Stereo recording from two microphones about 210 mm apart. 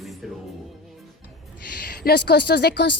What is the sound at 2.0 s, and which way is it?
Speech, 50° left (ahead or behind).